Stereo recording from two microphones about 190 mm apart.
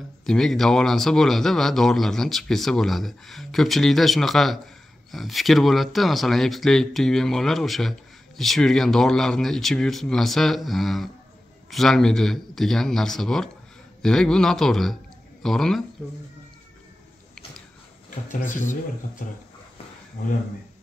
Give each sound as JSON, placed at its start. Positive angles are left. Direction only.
{"t": 0.2, "sound": "speech", "side_deg": 0}
{"t": 18.5, "sound": "speech", "side_deg": 40}